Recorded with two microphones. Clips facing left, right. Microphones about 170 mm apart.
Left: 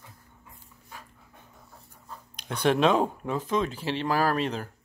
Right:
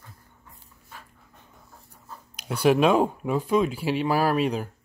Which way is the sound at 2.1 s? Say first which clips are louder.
Right 3 dB; 10° right (ahead or behind).